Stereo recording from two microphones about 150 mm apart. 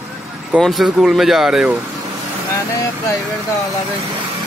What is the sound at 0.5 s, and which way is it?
Speech, centre (ahead or behind).